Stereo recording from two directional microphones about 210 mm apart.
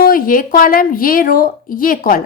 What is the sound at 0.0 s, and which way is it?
A woman's voice, 45° left (ahead or behind).